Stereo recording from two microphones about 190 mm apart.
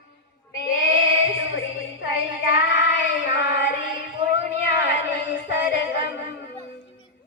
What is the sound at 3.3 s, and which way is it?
Music, 65° left (ahead or behind).